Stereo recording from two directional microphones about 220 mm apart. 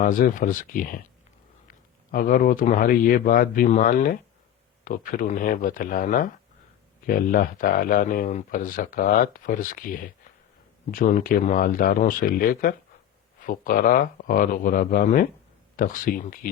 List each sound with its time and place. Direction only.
0.0 s speech: 40° left (ahead or behind)
2.1 s speech: 40° left (ahead or behind)